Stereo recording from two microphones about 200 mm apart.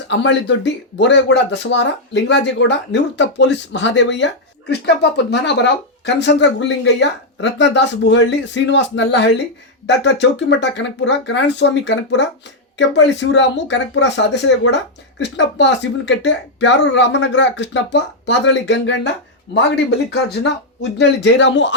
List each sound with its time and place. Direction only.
0.1 s speech: 65° left (ahead or behind)
21.0 s speech: 60° left (ahead or behind)